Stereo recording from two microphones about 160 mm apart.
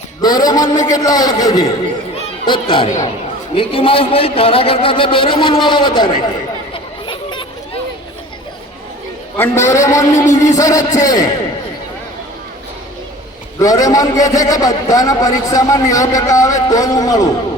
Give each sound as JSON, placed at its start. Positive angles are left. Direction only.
{"t": 0.2, "sound": "a man's voice", "side_deg": 25}
{"t": 2.5, "sound": "a man's voice", "side_deg": 35}
{"t": 3.5, "sound": "a man's voice", "side_deg": 35}
{"t": 6.7, "sound": "chatter", "side_deg": 30}
{"t": 9.4, "sound": "a man's voice", "side_deg": 15}
{"t": 13.6, "sound": "a man's voice", "side_deg": 20}